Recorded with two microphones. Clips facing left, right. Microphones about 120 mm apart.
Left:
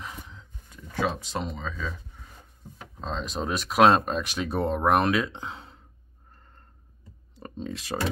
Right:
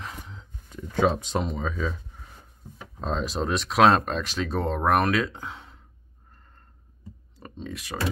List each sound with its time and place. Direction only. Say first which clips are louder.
1.0 s speech: right 5 dB; 20° right (ahead or behind)
3.0 s speech: right 3 dB; 5° right (ahead or behind); by 5.8 s 30° left (ahead or behind)
7.3 s speech: left 2 dB; 35° left (ahead or behind)